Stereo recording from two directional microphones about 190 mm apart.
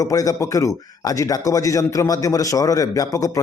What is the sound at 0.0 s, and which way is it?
A man's voice, 20° left (ahead or behind).